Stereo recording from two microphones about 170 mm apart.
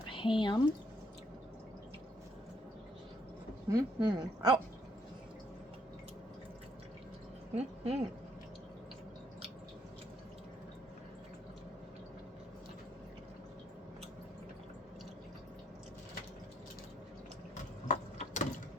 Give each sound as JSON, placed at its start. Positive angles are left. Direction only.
{"t": 0.1, "sound": "speech", "side_deg": 30}
{"t": 3.7, "sound": "speech", "side_deg": -25}
{"t": 7.5, "sound": "speech", "side_deg": -40}
{"t": 17.8, "sound": "gears", "side_deg": 45}